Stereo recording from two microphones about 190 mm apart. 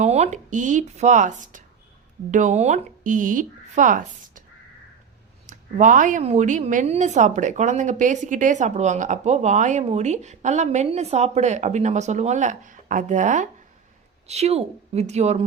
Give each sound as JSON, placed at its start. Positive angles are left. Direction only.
{"t": 0.0, "sound": "a woman's voice", "side_deg": -35}
{"t": 5.5, "sound": "a woman's voice", "side_deg": -40}